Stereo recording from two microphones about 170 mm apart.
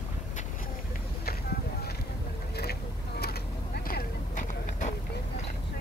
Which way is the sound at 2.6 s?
70° left (ahead or behind).